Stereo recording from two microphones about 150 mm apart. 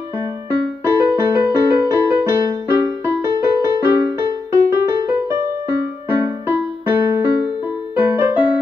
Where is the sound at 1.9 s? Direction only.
15° right (ahead or behind).